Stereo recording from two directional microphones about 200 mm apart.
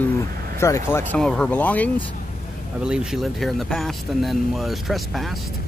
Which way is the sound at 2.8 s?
5° right (ahead or behind).